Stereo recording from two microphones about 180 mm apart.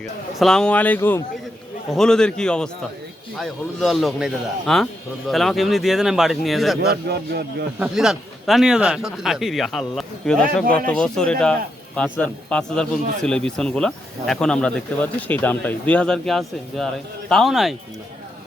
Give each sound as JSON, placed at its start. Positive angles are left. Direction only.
{"t": 0.0, "sound": "a man's voice", "side_deg": 0}
{"t": 6.8, "sound": "a man's voice", "side_deg": -60}
{"t": 7.8, "sound": "speech", "side_deg": -5}